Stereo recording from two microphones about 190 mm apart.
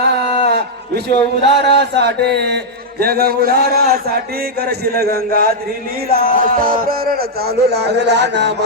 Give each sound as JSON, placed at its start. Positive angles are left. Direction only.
{"t": 0.4, "sound": "a man's voice", "side_deg": -60}